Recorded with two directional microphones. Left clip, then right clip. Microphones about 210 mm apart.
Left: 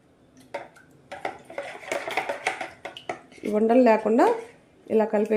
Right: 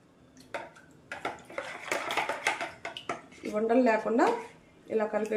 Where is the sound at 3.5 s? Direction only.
45° left (ahead or behind).